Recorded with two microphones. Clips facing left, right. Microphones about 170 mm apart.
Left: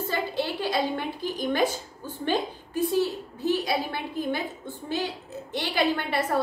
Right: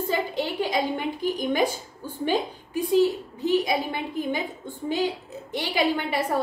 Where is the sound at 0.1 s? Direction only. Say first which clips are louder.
Right 1 dB; 15° right (ahead or behind).